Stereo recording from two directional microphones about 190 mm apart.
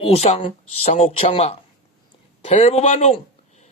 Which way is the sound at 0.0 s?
30° left (ahead or behind).